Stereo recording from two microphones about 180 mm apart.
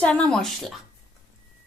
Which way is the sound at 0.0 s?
5° left (ahead or behind).